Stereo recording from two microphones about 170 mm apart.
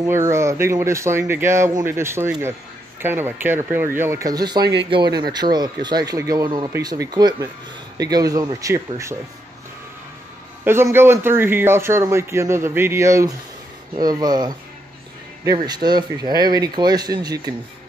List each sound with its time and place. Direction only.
0.0 s a man's voice: 15° right (ahead or behind)
10.6 s a man's voice: 15° right (ahead or behind)